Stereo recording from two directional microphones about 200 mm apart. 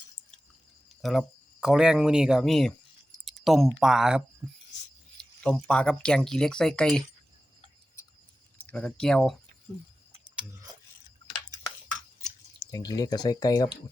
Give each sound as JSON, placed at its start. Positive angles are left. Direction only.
{"t": 1.0, "sound": "speech", "side_deg": 0}
{"t": 8.5, "sound": "speech", "side_deg": 5}
{"t": 12.7, "sound": "speech", "side_deg": 20}